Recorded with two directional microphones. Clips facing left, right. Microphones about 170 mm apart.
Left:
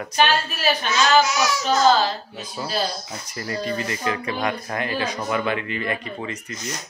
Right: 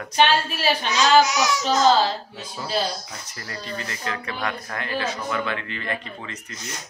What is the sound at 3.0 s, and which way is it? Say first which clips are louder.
Speech: left 7 dB; 15° left (ahead or behind).